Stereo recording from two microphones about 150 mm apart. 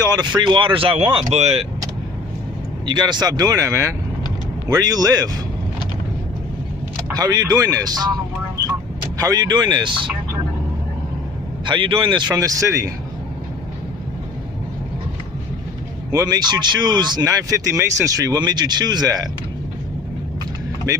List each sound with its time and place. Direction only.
0.4 s a man's voice: 30° right (ahead or behind)
2.9 s speech: 30° right (ahead or behind)
7.2 s speech: 25° right (ahead or behind)
9.2 s speech: 25° right (ahead or behind)
11.6 s a man's voice: 35° right (ahead or behind)
16.1 s speech: 25° right (ahead or behind)